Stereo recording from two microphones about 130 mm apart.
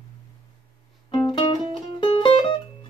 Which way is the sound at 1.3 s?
40° left (ahead or behind).